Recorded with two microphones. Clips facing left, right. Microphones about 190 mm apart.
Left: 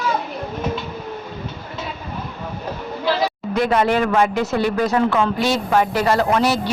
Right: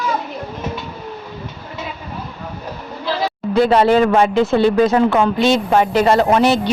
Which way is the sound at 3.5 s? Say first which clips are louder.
Right 6 dB; 30° right (ahead or behind).